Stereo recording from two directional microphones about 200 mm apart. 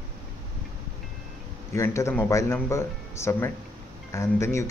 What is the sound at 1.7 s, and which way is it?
Speech, 15° left (ahead or behind).